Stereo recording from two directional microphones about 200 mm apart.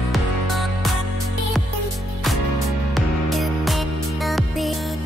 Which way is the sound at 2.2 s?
Centre (ahead or behind).